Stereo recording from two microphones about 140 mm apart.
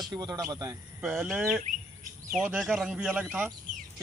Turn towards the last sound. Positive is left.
turn(degrees=-10)  # may be behind; listen again after turning